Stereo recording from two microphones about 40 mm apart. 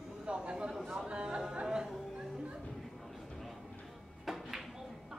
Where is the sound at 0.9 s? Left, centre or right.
Right.